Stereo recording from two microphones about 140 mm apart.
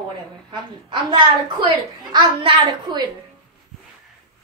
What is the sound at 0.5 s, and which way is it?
A woman's voice, 35° right (ahead or behind).